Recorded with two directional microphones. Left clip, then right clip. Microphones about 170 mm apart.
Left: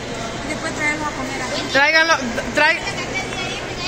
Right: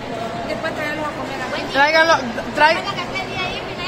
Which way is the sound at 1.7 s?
15° left (ahead or behind).